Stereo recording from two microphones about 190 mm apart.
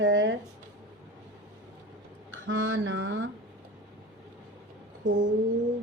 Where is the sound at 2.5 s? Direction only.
90° right.